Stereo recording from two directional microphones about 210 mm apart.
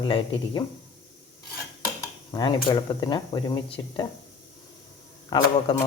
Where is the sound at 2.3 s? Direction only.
20° left (ahead or behind).